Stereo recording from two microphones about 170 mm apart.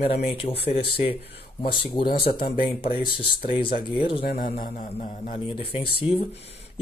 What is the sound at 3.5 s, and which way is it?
Speech, 30° left (ahead or behind).